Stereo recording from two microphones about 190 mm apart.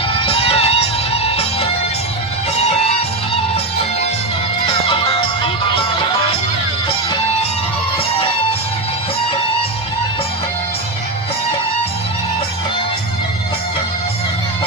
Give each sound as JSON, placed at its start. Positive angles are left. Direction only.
{"t": 0.3, "sound": "music", "side_deg": 30}
{"t": 4.6, "sound": "music", "side_deg": 25}